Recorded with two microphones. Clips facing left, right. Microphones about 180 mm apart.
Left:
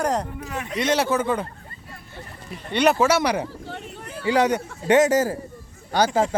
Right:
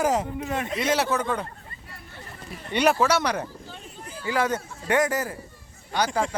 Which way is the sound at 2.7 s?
Centre (ahead or behind).